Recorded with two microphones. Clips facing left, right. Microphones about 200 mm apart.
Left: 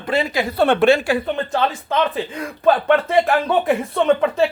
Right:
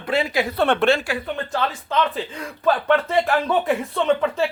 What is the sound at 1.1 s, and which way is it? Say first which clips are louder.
Speech: left 6 dB; 25° left (ahead or behind).